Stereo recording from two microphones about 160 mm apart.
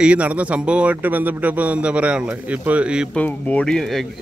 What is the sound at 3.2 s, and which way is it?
Speech, 10° left (ahead or behind).